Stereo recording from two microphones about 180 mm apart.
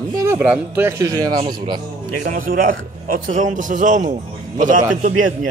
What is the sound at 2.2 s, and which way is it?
A man's voice, 50° right (ahead or behind).